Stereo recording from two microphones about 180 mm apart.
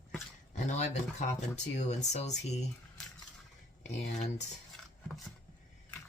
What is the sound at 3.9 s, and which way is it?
Speech, 40° left (ahead or behind).